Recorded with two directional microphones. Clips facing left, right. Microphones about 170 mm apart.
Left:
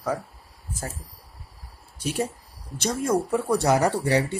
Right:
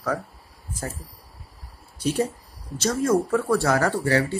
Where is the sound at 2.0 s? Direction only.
10° left (ahead or behind).